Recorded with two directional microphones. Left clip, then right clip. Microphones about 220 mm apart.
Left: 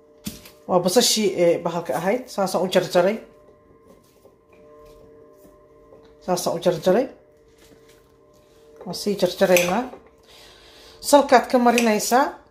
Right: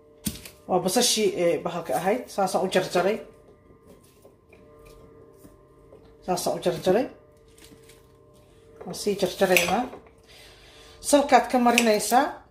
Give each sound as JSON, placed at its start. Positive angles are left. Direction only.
{"t": 0.7, "sound": "speech", "side_deg": 35}
{"t": 6.2, "sound": "speech", "side_deg": 30}
{"t": 9.0, "sound": "speech", "side_deg": 35}
{"t": 10.3, "sound": "a sound", "side_deg": 35}
{"t": 11.9, "sound": "speech", "side_deg": 35}